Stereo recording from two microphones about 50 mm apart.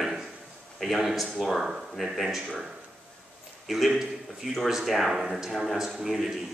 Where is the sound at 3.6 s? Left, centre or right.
Centre.